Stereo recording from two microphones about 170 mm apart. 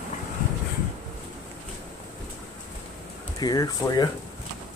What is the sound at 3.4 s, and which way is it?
Speech, 20° left (ahead or behind).